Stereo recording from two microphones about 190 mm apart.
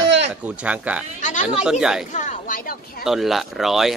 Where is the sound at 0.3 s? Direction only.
5° right (ahead or behind).